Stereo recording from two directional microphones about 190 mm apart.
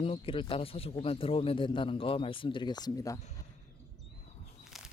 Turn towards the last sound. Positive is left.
turn(degrees=20)  # may be behind; listen again after turning